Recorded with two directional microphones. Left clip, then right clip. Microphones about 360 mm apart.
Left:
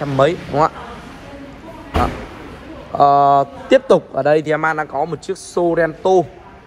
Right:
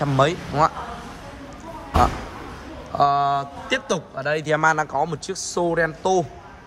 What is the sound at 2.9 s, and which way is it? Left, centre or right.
A man's voice, centre.